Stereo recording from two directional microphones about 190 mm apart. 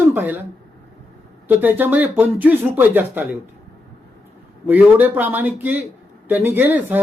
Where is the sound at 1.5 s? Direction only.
10° right (ahead or behind).